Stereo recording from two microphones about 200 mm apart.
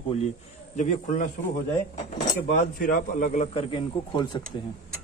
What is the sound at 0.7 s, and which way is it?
Speech, 40° left (ahead or behind).